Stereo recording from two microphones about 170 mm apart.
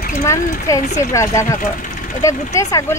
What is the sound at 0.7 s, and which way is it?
Speech, 20° left (ahead or behind).